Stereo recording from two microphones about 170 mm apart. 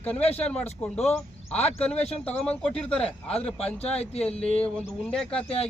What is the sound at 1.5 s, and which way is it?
Speech, 35° left (ahead or behind).